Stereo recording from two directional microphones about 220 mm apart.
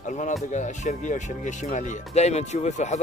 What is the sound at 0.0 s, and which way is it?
Speech, 35° left (ahead or behind).